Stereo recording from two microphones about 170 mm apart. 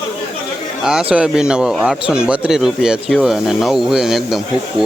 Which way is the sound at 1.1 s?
5° right (ahead or behind).